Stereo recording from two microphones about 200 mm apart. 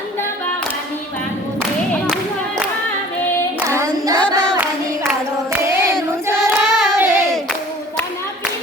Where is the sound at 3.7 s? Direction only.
15° right (ahead or behind).